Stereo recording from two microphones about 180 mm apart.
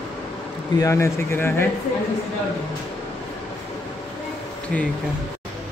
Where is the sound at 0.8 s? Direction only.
15° left (ahead or behind).